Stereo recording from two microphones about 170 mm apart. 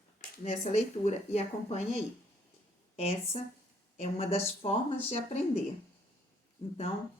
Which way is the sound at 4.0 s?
35° left (ahead or behind).